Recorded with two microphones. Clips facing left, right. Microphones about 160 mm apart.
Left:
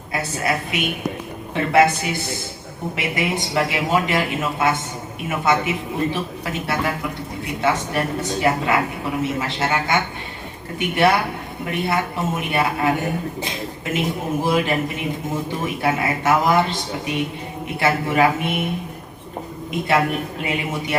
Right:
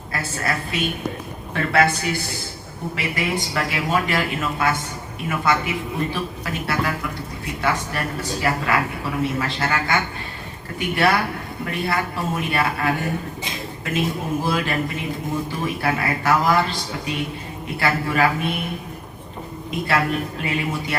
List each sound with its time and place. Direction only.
0.1 s a woman's voice: 20° left (ahead or behind)
1.5 s speech: 20° left (ahead or behind)
14.4 s speech: 20° left (ahead or behind)
19.9 s speech: 20° left (ahead or behind)